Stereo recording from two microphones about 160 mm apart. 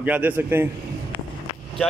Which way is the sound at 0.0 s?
10° right (ahead or behind).